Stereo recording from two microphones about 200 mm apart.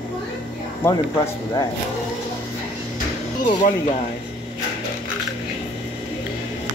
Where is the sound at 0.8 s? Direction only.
15° left (ahead or behind).